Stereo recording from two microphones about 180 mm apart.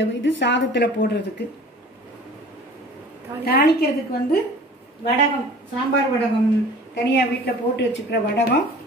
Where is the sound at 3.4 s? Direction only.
65° left (ahead or behind).